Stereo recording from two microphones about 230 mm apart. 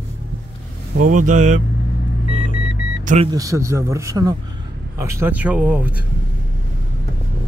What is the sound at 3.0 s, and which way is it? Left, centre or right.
Speech, right.